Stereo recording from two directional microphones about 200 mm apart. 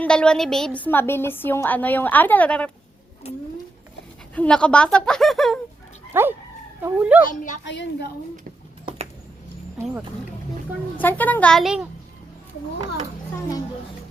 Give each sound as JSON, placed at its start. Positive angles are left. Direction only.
{"t": 0.0, "sound": "a woman's voice", "side_deg": 5}
{"t": 4.4, "sound": "speech", "side_deg": 5}
{"t": 6.1, "sound": "speech", "side_deg": -10}
{"t": 7.3, "sound": "a woman's voice", "side_deg": 40}
{"t": 7.6, "sound": "a woman's voice", "side_deg": 60}
{"t": 10.9, "sound": "a woman's voice", "side_deg": 10}